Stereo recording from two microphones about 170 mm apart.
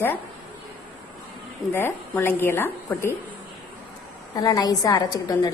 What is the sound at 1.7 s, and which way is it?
A woman's voice, 10° left (ahead or behind).